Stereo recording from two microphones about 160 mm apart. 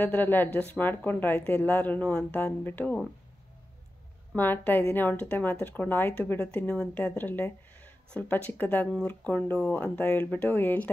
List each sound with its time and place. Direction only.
0.0 s speech: 10° left (ahead or behind)
4.4 s speech: 10° left (ahead or behind)